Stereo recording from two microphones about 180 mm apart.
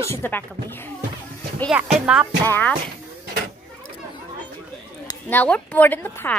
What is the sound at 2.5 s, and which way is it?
Speech, 10° left (ahead or behind).